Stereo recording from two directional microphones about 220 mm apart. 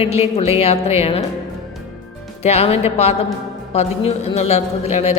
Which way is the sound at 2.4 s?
30° left (ahead or behind).